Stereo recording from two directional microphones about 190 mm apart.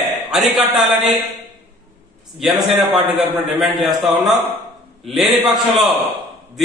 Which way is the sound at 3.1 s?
Centre (ahead or behind).